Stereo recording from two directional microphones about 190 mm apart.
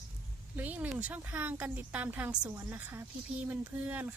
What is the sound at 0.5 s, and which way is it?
Speech, 10° right (ahead or behind).